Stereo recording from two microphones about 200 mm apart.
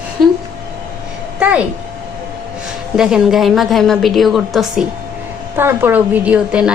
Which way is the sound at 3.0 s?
5° right (ahead or behind).